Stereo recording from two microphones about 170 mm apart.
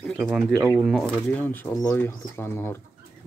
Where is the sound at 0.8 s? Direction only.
5° left (ahead or behind).